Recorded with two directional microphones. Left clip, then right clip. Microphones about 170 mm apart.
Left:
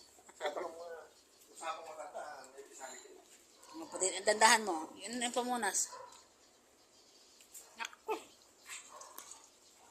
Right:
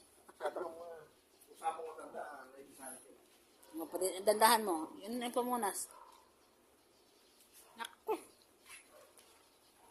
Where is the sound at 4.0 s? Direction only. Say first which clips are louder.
Left 1 dB; 30° right (ahead or behind).